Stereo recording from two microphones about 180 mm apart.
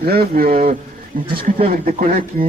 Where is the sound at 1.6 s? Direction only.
45° right (ahead or behind).